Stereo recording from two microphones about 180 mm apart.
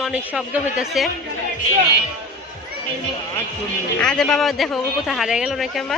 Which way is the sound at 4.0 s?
5° left (ahead or behind).